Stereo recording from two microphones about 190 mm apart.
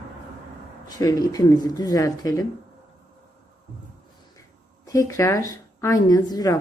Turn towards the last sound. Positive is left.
turn(degrees=20)  # may be behind; listen again after turning